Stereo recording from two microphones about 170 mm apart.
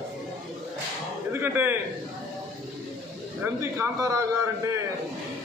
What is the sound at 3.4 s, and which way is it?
A man's voice, 15° right (ahead or behind).